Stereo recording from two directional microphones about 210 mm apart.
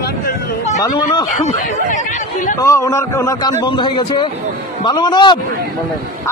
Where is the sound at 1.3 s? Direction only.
40° left (ahead or behind).